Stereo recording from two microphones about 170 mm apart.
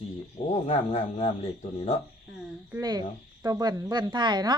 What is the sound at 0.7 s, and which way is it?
Speech, 35° left (ahead or behind).